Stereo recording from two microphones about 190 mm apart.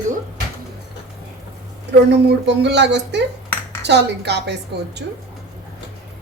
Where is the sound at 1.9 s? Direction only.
65° right (ahead or behind).